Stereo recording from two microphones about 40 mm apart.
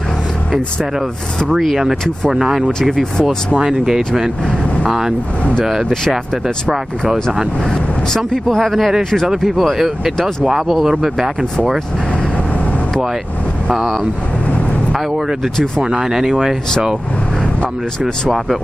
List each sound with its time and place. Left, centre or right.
2.3 s speech: centre
2.8 s speech: centre
3.6 s speech: centre
6.4 s speech: centre
8.5 s speech: centre
9.6 s speech: centre
15.8 s speech: right